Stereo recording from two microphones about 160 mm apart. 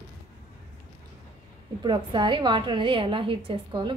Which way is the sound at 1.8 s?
30° right (ahead or behind).